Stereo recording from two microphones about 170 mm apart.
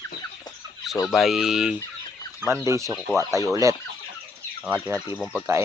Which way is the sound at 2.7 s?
20° right (ahead or behind).